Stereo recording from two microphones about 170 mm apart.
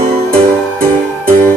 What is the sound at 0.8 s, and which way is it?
Music, 55° right (ahead or behind).